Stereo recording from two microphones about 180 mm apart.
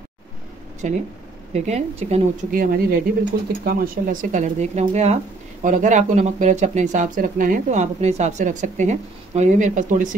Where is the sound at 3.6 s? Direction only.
55° right (ahead or behind).